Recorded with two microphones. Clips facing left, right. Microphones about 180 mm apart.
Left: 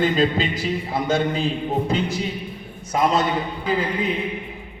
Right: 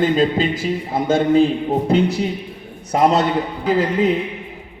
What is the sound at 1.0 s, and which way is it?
Speech, 50° right (ahead or behind).